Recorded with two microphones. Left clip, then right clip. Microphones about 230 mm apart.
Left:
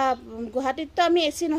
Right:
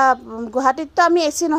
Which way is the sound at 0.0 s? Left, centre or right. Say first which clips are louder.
Right 8 dB; right.